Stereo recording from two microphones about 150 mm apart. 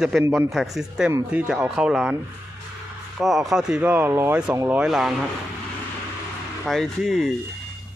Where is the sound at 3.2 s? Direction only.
Centre (ahead or behind).